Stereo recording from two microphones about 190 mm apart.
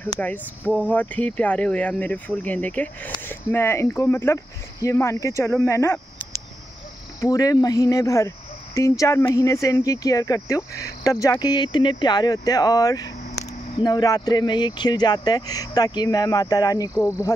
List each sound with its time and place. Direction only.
0.0 s speech: 10° left (ahead or behind)
7.2 s speech: 20° left (ahead or behind)